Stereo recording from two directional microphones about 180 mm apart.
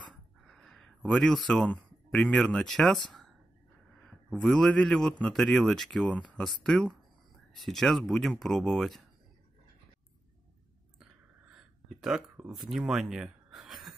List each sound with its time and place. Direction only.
0.1 s a sound: centre (ahead or behind)
4.0 s a man's voice: centre (ahead or behind)
11.5 s speech: centre (ahead or behind)